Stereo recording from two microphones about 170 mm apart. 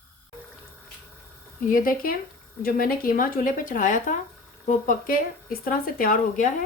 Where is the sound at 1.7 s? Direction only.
55° left (ahead or behind).